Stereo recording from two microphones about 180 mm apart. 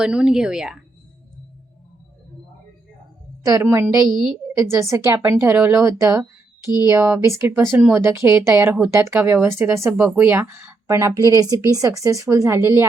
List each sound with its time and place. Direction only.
0.0 s speech: 5° right (ahead or behind)
3.4 s speech: 15° right (ahead or behind)